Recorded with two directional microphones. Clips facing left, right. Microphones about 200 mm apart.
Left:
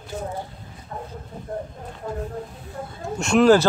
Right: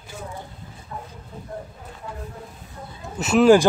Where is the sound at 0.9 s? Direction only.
40° left (ahead or behind).